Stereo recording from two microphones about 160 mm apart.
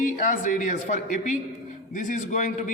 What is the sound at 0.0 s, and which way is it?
A man's voice, 55° left (ahead or behind).